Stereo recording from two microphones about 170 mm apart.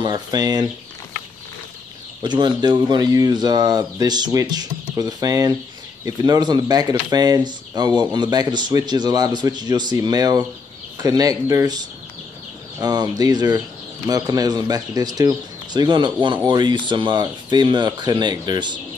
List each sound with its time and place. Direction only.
0.0 s speech: 25° right (ahead or behind)
2.2 s speech: 25° right (ahead or behind)